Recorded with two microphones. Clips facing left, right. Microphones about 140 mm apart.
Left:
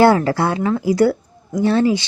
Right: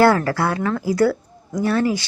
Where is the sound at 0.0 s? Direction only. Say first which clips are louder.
Left 2 dB; 20° left (ahead or behind).